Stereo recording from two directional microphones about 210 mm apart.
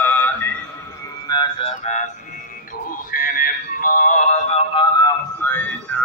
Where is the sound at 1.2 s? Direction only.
20° left (ahead or behind).